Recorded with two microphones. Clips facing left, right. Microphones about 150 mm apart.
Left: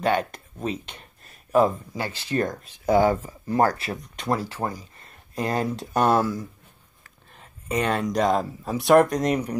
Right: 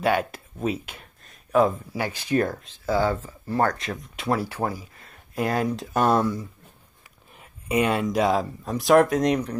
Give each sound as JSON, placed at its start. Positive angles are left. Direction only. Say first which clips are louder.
{"t": 0.0, "sound": "speech", "louder": "even", "side_deg": -10}
{"t": 1.2, "sound": "a sound", "louder": "even", "side_deg": 0}
{"t": 2.0, "sound": "speech", "louder": "right 3 dB", "side_deg": -15}
{"t": 2.6, "sound": "speech", "louder": "left 4 dB", "side_deg": 15}
{"t": 4.0, "sound": "speech", "louder": "right 1 dB", "side_deg": 0}
{"t": 4.4, "sound": "speech", "louder": "right 2 dB", "side_deg": -10}
{"t": 7.0, "sound": "speech", "louder": "left 1 dB", "side_deg": -10}